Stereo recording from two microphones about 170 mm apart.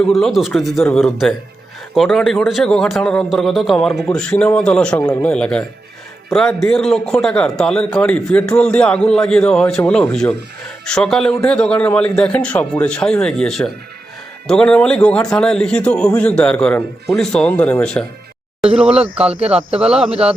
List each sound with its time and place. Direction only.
0.0 s a man's voice: centre (ahead or behind)
19.0 s speech: 5° right (ahead or behind)
19.4 s speech: 35° right (ahead or behind)
19.8 s a man's voice: 5° right (ahead or behind)